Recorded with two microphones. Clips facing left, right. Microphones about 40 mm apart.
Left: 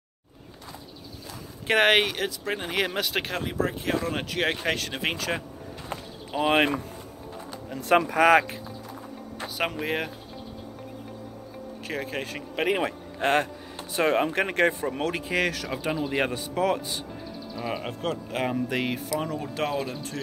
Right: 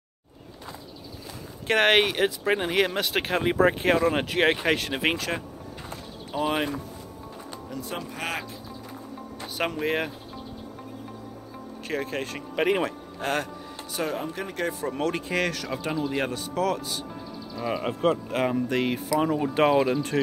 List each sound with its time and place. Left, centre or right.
1.7 s speech: centre
2.1 s speech: centre
3.4 s speech: right
3.9 s speech: right
5.9 s a sound: left
7.8 s speech: left
9.6 s speech: centre
11.8 s speech: centre
13.2 s speech: left
14.0 s speech: left
14.8 s speech: centre
16.1 s speech: centre
17.6 s speech: centre
19.2 s speech: centre; by 20.2 s right